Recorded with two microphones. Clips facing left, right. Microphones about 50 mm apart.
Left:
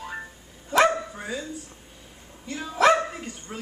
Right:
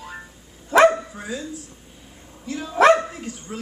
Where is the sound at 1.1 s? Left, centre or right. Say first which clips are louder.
Right 2 dB; centre.